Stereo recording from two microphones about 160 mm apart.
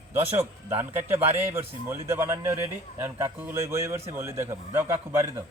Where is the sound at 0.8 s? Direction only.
10° right (ahead or behind).